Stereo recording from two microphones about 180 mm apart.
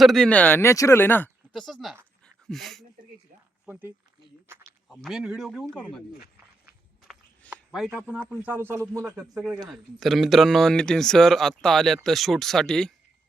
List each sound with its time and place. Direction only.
0.0 s speech: centre (ahead or behind)
1.6 s speech: centre (ahead or behind)
2.2 s dog: centre (ahead or behind)
3.7 s speech: 10° right (ahead or behind); by 6.0 s 5° left (ahead or behind)
7.5 s a sound: 5° right (ahead or behind)
8.1 s speech: 10° right (ahead or behind)
9.7 s speech: centre (ahead or behind)